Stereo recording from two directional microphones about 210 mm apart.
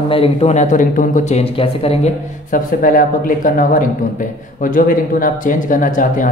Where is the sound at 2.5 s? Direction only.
40° left (ahead or behind).